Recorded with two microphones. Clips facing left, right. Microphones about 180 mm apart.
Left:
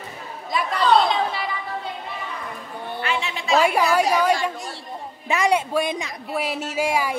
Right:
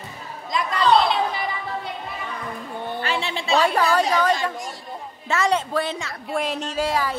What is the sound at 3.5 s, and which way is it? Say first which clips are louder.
A woman's voice: left 1 dB; 10° left (ahead or behind).